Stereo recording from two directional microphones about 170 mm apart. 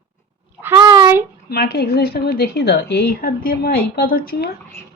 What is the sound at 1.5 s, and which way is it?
A woman's voice, 65° left (ahead or behind).